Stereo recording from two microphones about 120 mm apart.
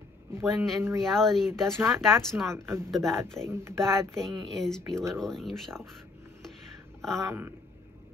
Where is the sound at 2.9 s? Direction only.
Centre (ahead or behind).